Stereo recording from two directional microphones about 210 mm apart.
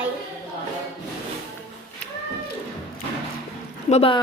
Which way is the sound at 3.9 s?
25° left (ahead or behind).